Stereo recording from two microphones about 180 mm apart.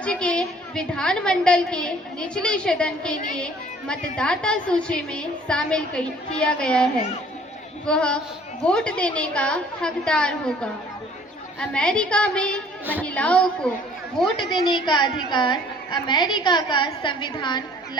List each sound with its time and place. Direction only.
0.0 s a woman's voice: 5° left (ahead or behind)
7.9 s a woman's voice: 5° left (ahead or behind)
14.5 s a woman's voice: 25° left (ahead or behind)